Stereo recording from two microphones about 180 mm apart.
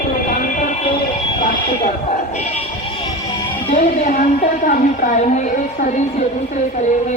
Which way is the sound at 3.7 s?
50° left (ahead or behind).